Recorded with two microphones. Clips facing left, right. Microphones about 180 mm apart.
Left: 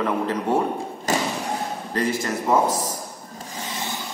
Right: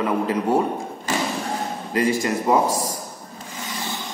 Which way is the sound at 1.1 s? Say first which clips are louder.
Left 2 dB; 40° left (ahead or behind).